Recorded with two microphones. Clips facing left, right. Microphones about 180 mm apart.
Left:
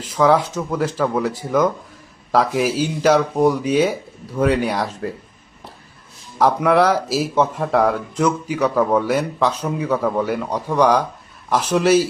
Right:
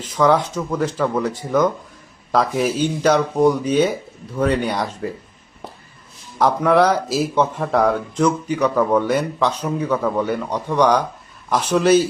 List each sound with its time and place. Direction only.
0.0 s speech: 5° left (ahead or behind)
6.4 s speech: 5° left (ahead or behind)